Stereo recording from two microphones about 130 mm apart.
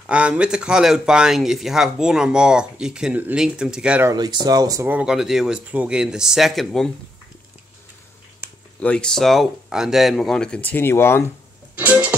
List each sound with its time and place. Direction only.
0.0 s speech: 10° right (ahead or behind)
4.0 s speech: 30° right (ahead or behind)
4.8 s speech: 10° right (ahead or behind)
8.8 s speech: 5° left (ahead or behind)
11.7 s music: 10° right (ahead or behind)